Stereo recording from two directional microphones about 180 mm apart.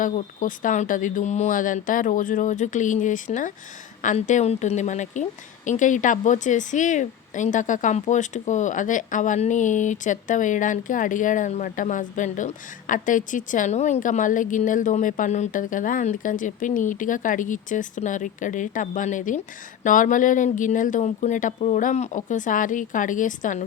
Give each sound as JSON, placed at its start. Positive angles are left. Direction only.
{"t": 0.0, "sound": "a woman's voice", "side_deg": 45}